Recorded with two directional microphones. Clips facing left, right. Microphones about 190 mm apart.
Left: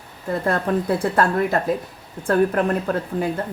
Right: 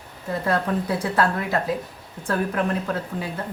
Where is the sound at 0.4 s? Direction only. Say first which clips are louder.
Left 2 dB; 50° left (ahead or behind).